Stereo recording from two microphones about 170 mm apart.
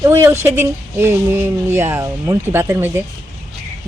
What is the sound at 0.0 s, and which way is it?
Speech, 15° right (ahead or behind).